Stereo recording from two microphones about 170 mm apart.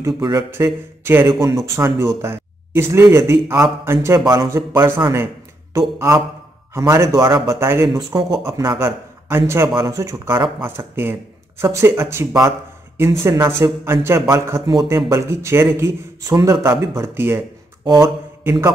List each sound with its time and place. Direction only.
0.0 s a man's voice: 25° right (ahead or behind)